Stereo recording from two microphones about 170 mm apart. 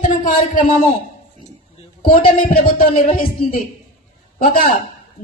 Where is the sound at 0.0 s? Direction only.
50° left (ahead or behind).